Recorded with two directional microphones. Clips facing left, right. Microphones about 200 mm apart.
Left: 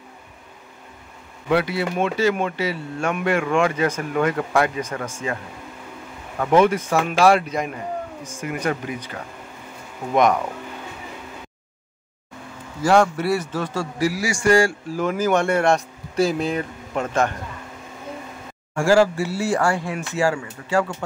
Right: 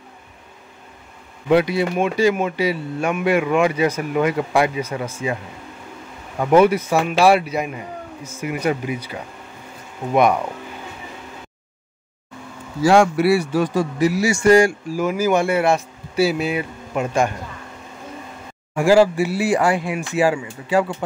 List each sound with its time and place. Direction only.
1.5 s a man's voice: 15° right (ahead or behind)
6.4 s a man's voice: 10° right (ahead or behind)
12.8 s a man's voice: 10° right (ahead or behind)
18.8 s a man's voice: 15° right (ahead or behind)